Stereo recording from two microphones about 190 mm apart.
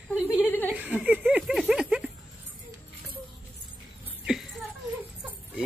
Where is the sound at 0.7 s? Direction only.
5° right (ahead or behind).